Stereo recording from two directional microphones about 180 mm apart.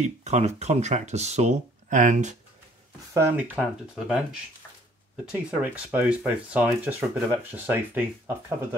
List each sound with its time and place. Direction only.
0.0 s speech: 40° right (ahead or behind)
3.1 s speech: 15° right (ahead or behind)
5.3 s speech: 10° right (ahead or behind)